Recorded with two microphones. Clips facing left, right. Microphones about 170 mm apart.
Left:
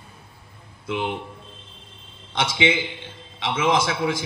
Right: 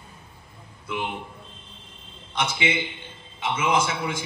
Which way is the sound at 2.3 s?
90° left.